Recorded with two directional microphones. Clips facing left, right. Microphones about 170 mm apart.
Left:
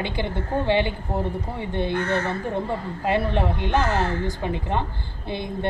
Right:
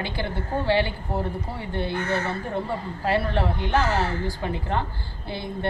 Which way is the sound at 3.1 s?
20° left (ahead or behind).